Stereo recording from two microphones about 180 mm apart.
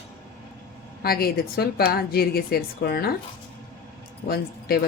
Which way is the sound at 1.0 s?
55° left (ahead or behind).